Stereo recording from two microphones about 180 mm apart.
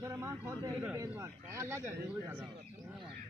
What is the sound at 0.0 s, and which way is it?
Speech, 15° right (ahead or behind).